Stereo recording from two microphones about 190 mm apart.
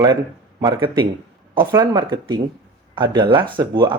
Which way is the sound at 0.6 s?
25° right (ahead or behind).